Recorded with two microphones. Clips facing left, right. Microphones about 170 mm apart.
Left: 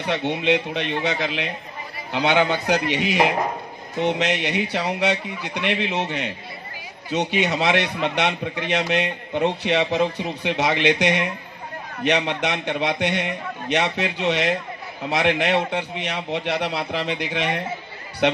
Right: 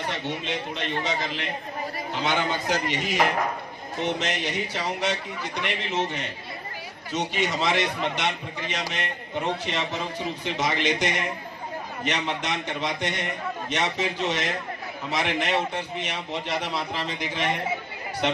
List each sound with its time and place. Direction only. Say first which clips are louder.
0.1 s a man's voice: left 9 dB; 70° left (ahead or behind)
3.2 s speech: left 3 dB; 15° left (ahead or behind)
4.2 s a man's voice: left 6 dB; 65° left (ahead or behind)